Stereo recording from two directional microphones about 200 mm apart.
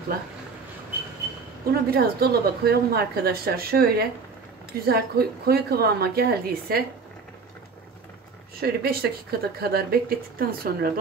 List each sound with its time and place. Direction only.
1.7 s speech: 50° right (ahead or behind)
8.5 s speech: 50° right (ahead or behind)